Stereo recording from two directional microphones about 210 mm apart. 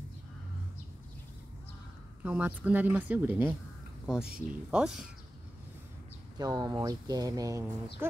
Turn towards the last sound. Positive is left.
turn(degrees=-15)  # may be behind; listen again after turning